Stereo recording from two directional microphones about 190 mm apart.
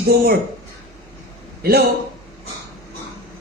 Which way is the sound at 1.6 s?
55° right (ahead or behind).